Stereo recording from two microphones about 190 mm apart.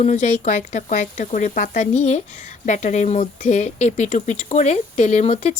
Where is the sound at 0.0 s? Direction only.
40° left (ahead or behind).